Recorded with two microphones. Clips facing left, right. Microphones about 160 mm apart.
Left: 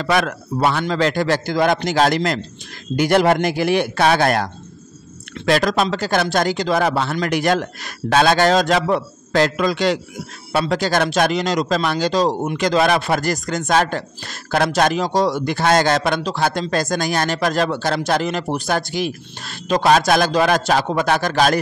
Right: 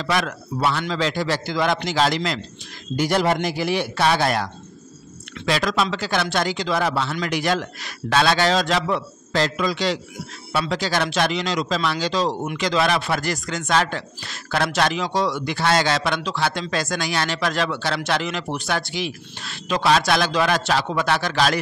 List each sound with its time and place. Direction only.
0.0 s a man's voice: 55° left (ahead or behind)
3.0 s a man's voice: 60° left (ahead or behind)